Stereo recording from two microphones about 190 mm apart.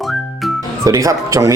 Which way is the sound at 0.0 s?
Centre (ahead or behind).